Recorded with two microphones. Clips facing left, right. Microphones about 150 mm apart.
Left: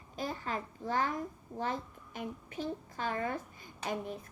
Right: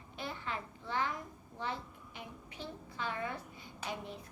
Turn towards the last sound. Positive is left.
turn(degrees=45)  # may be behind; listen again after turning